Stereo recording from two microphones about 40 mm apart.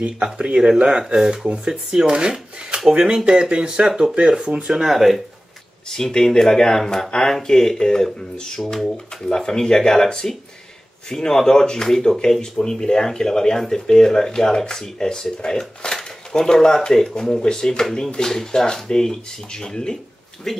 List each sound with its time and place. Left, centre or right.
0.0 s speech: right
4.8 s speech: centre
6.1 s speech: centre